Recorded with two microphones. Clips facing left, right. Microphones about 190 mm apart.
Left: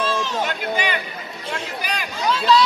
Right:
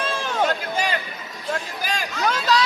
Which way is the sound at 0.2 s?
55° right (ahead or behind).